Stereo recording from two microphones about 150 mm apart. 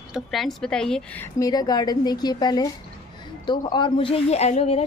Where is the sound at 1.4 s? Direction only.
25° left (ahead or behind); by 4.8 s 45° left (ahead or behind).